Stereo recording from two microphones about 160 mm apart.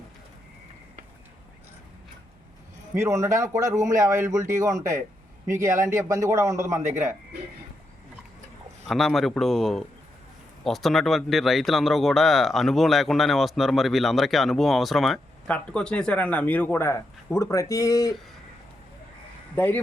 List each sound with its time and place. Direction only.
2.9 s a man's voice: 20° right (ahead or behind)
8.9 s speech: centre (ahead or behind); by 18.1 s 20° left (ahead or behind)
19.5 s speech: 10° left (ahead or behind)